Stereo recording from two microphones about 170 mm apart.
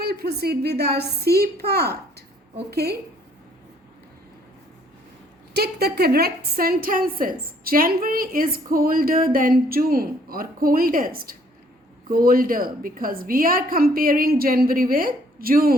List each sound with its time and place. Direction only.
0.0 s a woman's voice: 70° right (ahead or behind)
5.5 s a woman's voice: 65° right (ahead or behind)